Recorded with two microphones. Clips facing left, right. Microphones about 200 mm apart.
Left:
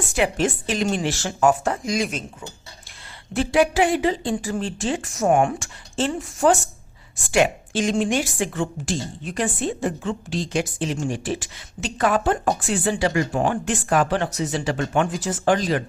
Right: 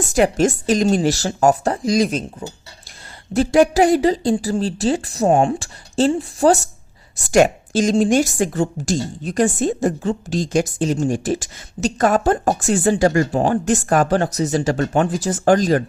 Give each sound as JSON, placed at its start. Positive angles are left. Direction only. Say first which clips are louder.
{"t": 0.1, "sound": "speech", "louder": "right 6 dB", "side_deg": -40}
{"t": 3.3, "sound": "a woman's voice", "louder": "right 5 dB", "side_deg": -40}